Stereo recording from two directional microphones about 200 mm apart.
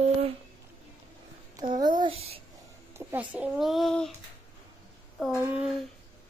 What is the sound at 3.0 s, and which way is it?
Speech, 10° right (ahead or behind).